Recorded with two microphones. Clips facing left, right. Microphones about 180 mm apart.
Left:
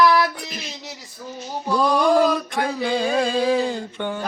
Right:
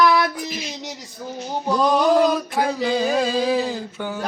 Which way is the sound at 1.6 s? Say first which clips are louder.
Right 1 dB; 20° right (ahead or behind).